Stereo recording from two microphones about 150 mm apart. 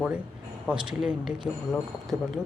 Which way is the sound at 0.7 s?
5° right (ahead or behind).